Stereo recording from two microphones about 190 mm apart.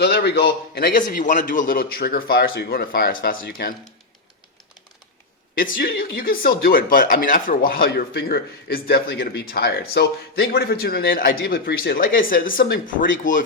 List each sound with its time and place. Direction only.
0.0 s speech: 60° left (ahead or behind)
6.0 s speech: 50° left (ahead or behind)